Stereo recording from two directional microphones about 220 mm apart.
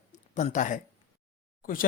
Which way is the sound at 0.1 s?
30° left (ahead or behind).